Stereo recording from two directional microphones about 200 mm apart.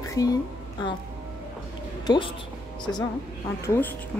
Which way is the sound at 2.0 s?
20° left (ahead or behind).